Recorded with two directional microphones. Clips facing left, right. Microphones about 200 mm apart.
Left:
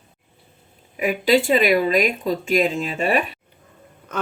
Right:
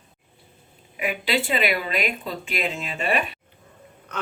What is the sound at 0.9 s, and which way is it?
Speech, 40° left (ahead or behind).